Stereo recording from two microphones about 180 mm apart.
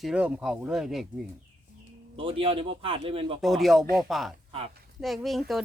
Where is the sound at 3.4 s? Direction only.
Centre (ahead or behind).